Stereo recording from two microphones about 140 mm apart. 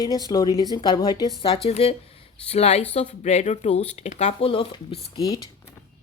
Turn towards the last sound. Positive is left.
turn(degrees=25)  # may be behind; listen again after turning